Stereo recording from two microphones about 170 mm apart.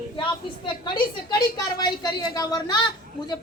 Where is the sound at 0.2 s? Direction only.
30° left (ahead or behind).